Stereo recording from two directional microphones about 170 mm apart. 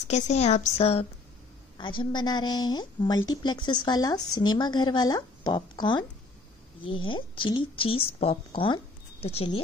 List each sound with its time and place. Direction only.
0.1 s speech: 40° left (ahead or behind)